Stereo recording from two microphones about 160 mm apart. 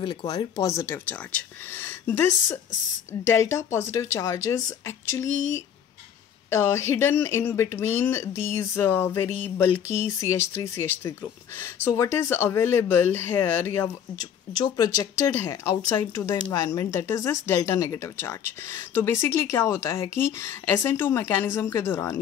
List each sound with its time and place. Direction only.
0.0 s a woman's voice: 30° left (ahead or behind)
6.5 s speech: 15° left (ahead or behind)
14.6 s speech: 25° left (ahead or behind)